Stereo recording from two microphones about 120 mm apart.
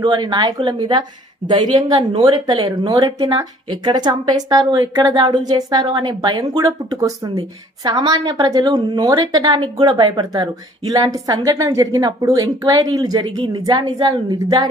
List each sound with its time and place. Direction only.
0.0 s speech: 40° right (ahead or behind)